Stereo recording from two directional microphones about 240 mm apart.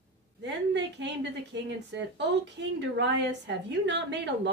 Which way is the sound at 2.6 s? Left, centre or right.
Right.